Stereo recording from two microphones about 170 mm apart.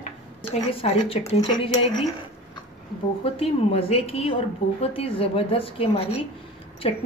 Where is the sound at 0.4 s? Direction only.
35° left (ahead or behind).